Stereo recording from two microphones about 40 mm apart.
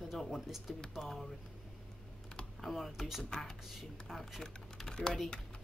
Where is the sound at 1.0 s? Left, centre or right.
Centre.